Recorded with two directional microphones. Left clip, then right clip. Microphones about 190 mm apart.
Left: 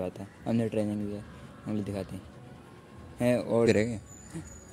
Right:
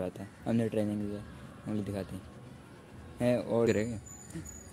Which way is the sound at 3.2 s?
15° left (ahead or behind).